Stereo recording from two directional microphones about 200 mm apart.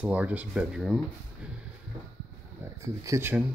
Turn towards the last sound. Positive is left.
turn(degrees=-10)  # may be behind; listen again after turning